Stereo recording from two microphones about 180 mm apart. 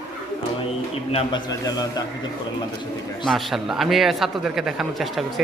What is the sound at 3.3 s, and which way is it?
A man's voice, centre (ahead or behind).